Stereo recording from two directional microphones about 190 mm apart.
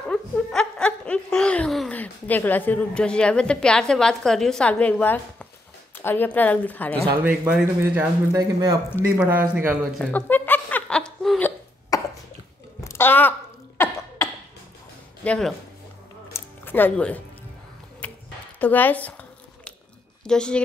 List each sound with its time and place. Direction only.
0.1 s a sound: 5° left (ahead or behind)
6.0 s a woman's voice: 10° left (ahead or behind)
7.2 s speech: 5° right (ahead or behind)
9.0 s speech: 10° right (ahead or behind)
9.9 s chuckle: 10° left (ahead or behind)
11.9 s a sound: 20° left (ahead or behind)
13.7 s cough: 15° left (ahead or behind)
15.2 s speech: 5° left (ahead or behind)
16.3 s a sound: 10° left (ahead or behind)
18.6 s a woman's voice: 10° left (ahead or behind)
20.2 s speech: 5° left (ahead or behind)